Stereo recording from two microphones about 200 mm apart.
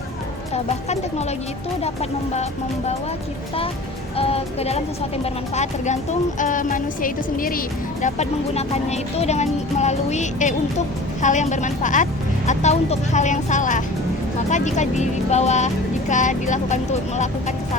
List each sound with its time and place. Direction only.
1.8 s speech: 30° left (ahead or behind)
4.2 s speech: 30° left (ahead or behind)
8.0 s speech: 35° left (ahead or behind)